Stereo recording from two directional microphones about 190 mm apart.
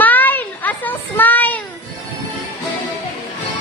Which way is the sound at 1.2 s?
10° left (ahead or behind).